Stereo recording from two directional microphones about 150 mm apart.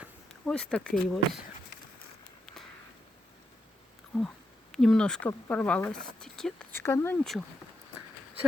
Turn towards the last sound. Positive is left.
turn(degrees=15)  # may be behind; listen again after turning